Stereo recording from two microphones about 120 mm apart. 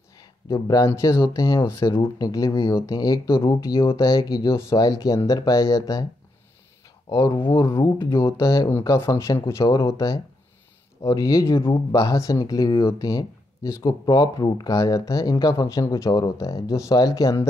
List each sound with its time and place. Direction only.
0.2 s speech: 30° left (ahead or behind)
7.1 s speech: 30° left (ahead or behind)
7.3 s speech: 45° left (ahead or behind)
8.0 s speech: 20° left (ahead or behind)